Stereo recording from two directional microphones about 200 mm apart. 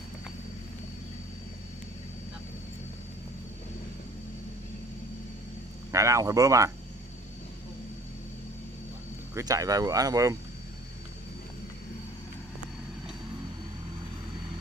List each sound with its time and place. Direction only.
5.9 s speech: 15° right (ahead or behind)
9.3 s speech: 15° right (ahead or behind)